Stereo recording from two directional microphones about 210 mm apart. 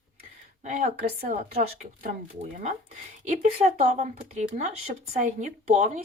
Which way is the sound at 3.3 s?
35° right (ahead or behind).